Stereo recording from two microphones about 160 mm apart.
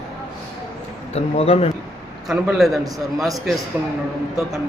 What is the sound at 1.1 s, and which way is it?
Speech, 40° left (ahead or behind).